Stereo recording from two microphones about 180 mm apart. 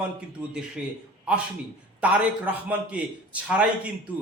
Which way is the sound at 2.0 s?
5° right (ahead or behind).